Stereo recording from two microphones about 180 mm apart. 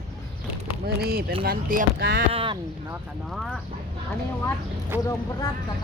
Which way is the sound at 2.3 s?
30° right (ahead or behind).